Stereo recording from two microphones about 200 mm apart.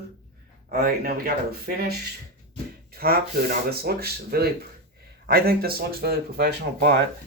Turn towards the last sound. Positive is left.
turn(degrees=-55)  # may be behind; listen again after turning